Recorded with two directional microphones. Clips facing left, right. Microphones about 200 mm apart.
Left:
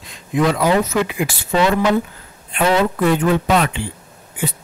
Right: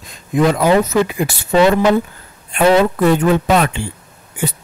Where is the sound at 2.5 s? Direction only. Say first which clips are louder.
Right 4 dB; 45° right (ahead or behind).